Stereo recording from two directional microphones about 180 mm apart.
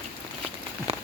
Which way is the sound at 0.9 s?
35° right (ahead or behind).